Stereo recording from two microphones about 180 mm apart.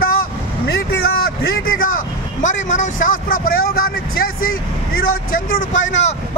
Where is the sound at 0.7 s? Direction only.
60° left (ahead or behind).